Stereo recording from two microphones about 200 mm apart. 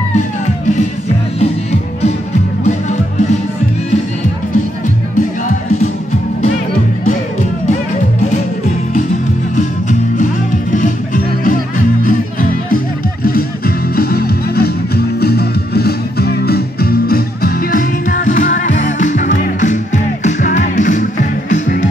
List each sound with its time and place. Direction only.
1.4 s music: 35° left (ahead or behind)
9.6 s music: 40° left (ahead or behind)